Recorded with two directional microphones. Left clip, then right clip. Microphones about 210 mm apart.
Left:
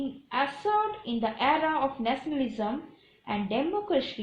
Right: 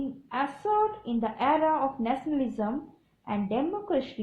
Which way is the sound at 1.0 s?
35° right (ahead or behind).